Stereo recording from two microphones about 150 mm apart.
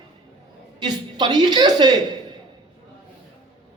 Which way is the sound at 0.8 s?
30° right (ahead or behind).